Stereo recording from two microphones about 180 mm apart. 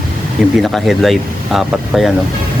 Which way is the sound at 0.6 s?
Centre (ahead or behind).